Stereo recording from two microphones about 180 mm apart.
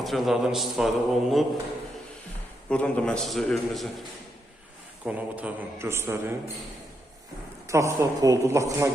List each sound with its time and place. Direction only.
0.0 s a man's voice: centre (ahead or behind)
2.6 s a man's voice: 5° left (ahead or behind)
5.0 s a man's voice: 10° right (ahead or behind)
7.7 s a man's voice: 15° right (ahead or behind)